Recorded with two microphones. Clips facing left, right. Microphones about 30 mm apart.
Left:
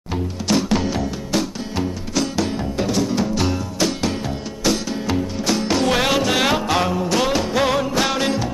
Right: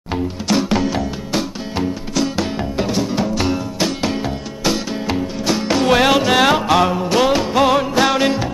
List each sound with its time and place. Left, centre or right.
0.5 s music: centre
0.9 s music: centre